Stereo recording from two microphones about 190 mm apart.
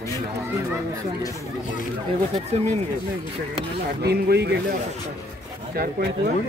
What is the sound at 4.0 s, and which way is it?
Speech, 60° right (ahead or behind).